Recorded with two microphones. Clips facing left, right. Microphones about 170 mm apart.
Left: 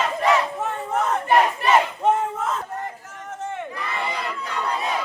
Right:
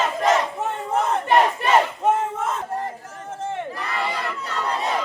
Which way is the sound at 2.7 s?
35° right (ahead or behind).